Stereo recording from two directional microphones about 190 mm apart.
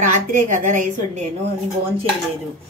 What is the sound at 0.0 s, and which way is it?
A woman's voice, 40° right (ahead or behind).